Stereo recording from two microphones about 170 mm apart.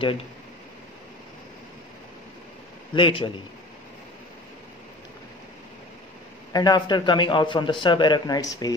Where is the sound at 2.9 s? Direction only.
30° left (ahead or behind).